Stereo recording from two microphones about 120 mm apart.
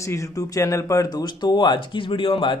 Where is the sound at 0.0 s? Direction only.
25° left (ahead or behind).